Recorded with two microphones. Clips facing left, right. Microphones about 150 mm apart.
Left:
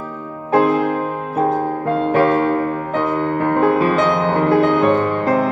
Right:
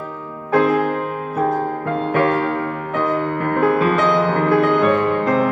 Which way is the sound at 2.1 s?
35° left (ahead or behind).